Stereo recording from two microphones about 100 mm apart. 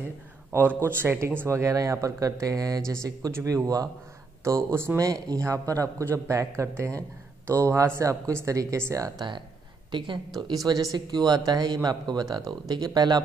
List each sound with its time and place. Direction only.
0.5 s speech: 25° right (ahead or behind)
4.9 s speech: 35° right (ahead or behind)
9.8 s speech: 55° right (ahead or behind)
10.5 s speech: 35° right (ahead or behind)